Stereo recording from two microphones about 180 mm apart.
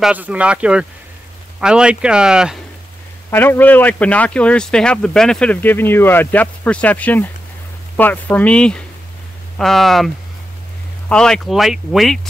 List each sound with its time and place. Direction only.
0.0 s speech: 10° right (ahead or behind)
3.3 s a man's voice: 10° left (ahead or behind)